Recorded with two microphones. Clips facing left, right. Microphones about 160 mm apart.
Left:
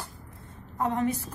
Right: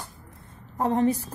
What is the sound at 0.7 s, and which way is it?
Speech, 30° right (ahead or behind).